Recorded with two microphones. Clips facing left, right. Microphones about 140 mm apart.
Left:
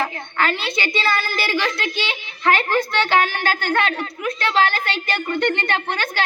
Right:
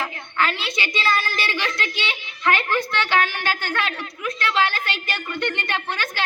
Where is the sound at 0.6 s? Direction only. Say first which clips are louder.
Left 3 dB; 35° left (ahead or behind).